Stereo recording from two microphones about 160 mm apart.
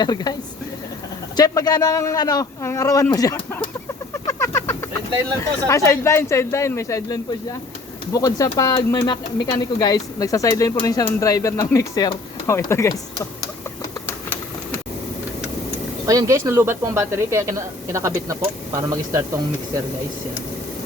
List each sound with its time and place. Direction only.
0.0 s speech: 25° left (ahead or behind)
1.4 s speech: 25° left (ahead or behind)
4.1 s a sound: 15° left (ahead or behind)
5.4 s speech: 20° left (ahead or behind)
16.0 s speech: 20° right (ahead or behind)